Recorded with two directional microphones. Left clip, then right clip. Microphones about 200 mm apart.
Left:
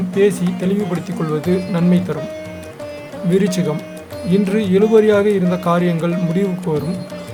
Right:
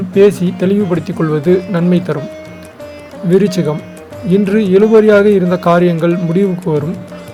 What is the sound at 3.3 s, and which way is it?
A man's voice, 15° right (ahead or behind).